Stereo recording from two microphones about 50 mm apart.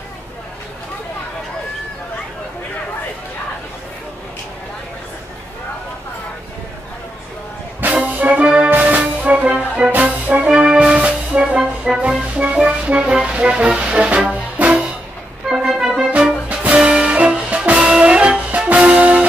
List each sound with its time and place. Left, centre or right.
7.8 s music: right
10.5 s music: centre
15.5 s organ: centre
16.7 s music: centre